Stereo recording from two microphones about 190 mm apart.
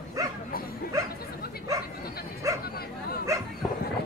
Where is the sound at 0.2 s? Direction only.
20° right (ahead or behind).